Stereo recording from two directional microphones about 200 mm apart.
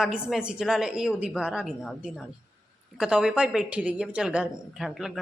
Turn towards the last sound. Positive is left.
turn(degrees=0)  # may be behind; listen again after turning